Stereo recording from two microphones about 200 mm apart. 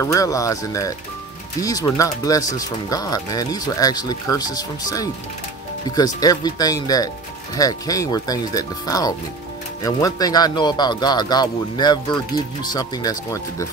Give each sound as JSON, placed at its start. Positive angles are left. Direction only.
{"t": 0.0, "sound": "speech", "side_deg": 15}